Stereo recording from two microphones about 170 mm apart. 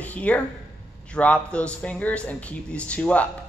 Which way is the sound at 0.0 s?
10° left (ahead or behind).